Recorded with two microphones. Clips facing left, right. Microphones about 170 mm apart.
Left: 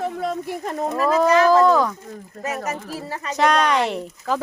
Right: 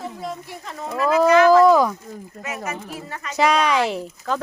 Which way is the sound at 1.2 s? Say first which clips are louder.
Right 3 dB; 35° left (ahead or behind).